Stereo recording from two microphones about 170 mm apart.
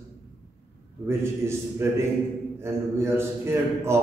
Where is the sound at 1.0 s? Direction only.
15° right (ahead or behind).